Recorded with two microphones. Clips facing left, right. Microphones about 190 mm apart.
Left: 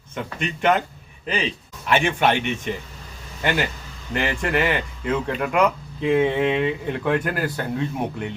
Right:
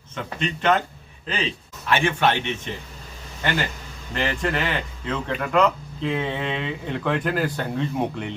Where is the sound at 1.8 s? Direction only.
15° left (ahead or behind).